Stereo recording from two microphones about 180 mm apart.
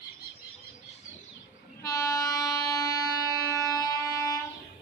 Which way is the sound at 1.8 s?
20° left (ahead or behind).